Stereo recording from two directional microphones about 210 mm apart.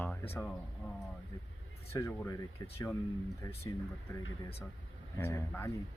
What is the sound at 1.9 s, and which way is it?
Speech, 10° left (ahead or behind).